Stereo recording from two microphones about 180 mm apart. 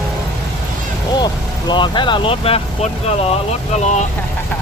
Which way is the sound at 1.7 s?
25° left (ahead or behind).